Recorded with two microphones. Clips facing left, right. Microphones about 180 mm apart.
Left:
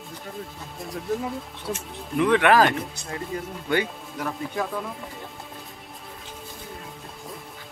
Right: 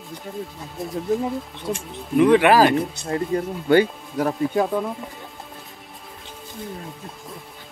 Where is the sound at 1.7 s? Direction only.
5° right (ahead or behind).